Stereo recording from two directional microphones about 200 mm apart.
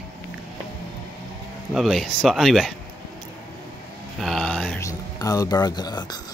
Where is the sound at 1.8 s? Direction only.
Centre (ahead or behind).